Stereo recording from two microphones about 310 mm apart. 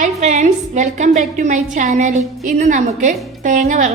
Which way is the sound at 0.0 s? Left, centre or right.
Right.